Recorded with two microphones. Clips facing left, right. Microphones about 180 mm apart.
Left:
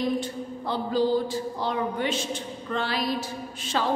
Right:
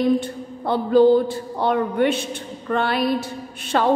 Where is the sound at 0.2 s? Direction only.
60° right (ahead or behind).